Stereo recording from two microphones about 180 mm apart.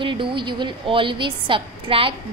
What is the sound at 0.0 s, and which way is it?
A woman's voice, 30° right (ahead or behind).